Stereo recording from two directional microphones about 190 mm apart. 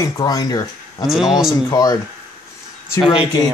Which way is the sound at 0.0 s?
20° left (ahead or behind).